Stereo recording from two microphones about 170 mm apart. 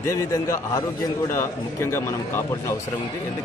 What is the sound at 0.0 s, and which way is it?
A man's voice, 20° left (ahead or behind).